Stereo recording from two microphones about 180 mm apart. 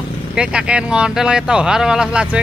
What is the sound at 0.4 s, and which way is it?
Speech, 5° right (ahead or behind).